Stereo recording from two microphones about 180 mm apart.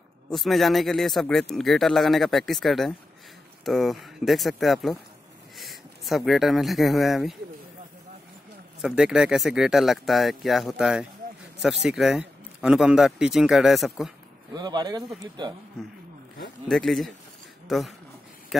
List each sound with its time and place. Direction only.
0.3 s speech: centre (ahead or behind)
8.8 s speech: 5° right (ahead or behind)
14.5 s speech: 25° right (ahead or behind)
16.6 s speech: centre (ahead or behind)